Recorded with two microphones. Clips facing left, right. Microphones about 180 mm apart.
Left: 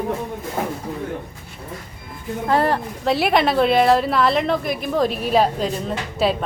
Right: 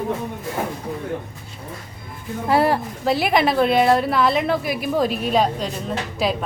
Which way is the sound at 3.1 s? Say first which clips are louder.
Left 1 dB; centre (ahead or behind).